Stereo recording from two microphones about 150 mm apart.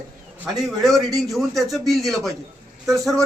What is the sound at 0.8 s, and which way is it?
A man's voice, centre (ahead or behind).